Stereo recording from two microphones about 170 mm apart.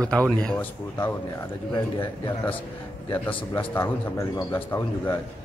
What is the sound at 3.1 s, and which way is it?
A man's voice, 15° left (ahead or behind).